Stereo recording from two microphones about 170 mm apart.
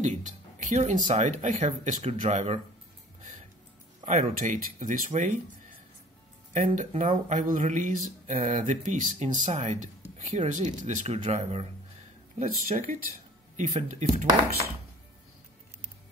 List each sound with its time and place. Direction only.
0.0 s speech: 45° right (ahead or behind)
4.0 s speech: 40° right (ahead or behind)
12.4 s speech: 50° right (ahead or behind)